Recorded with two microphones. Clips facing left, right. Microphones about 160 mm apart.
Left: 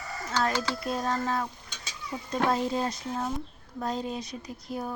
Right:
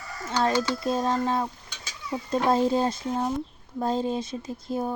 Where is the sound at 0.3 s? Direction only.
25° right (ahead or behind).